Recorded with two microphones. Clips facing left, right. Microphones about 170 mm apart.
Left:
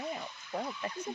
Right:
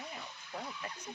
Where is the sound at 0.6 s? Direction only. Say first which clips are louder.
Left 7 dB; 40° left (ahead or behind).